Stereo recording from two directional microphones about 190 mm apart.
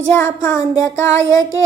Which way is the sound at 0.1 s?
15° left (ahead or behind).